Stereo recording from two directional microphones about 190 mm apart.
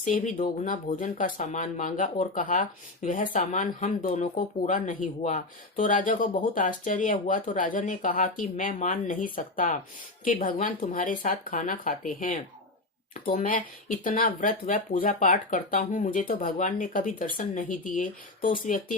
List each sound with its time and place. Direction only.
0.0 s speech: 45° left (ahead or behind)